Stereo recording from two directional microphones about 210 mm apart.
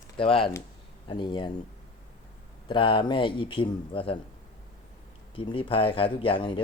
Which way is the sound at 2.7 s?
25° left (ahead or behind).